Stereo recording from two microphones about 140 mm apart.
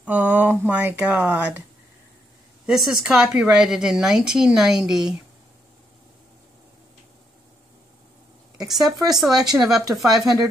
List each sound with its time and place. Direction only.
0.0 s speech: 10° right (ahead or behind)
2.6 s speech: 5° right (ahead or behind)
8.6 s speech: centre (ahead or behind)